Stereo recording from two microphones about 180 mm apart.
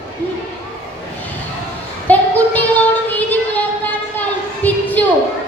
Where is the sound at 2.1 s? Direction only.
10° left (ahead or behind).